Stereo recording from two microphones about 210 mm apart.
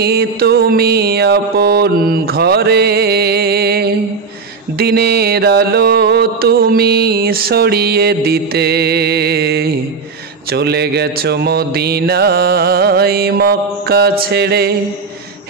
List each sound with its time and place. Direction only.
0.0 s music: 50° right (ahead or behind)
4.7 s mantra: 50° right (ahead or behind)